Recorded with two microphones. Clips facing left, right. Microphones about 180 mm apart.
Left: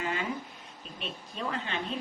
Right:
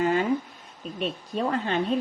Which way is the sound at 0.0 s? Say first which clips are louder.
Right 10 dB; 45° right (ahead or behind).